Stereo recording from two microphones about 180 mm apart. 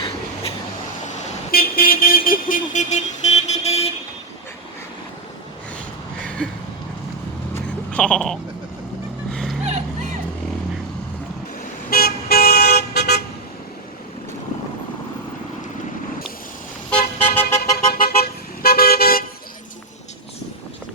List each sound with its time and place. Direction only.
1.5 s vehicle: 55° left (ahead or behind); by 3.8 s 35° left (ahead or behind)
6.2 s a sound: 5° left (ahead or behind)
7.5 s a sound: 5° left (ahead or behind)
9.3 s music: centre (ahead or behind)
9.6 s music: 40° right (ahead or behind)
11.9 s toot: 55° left (ahead or behind)
16.9 s vehicle: 10° left (ahead or behind)
17.9 s vehicle: 55° left (ahead or behind)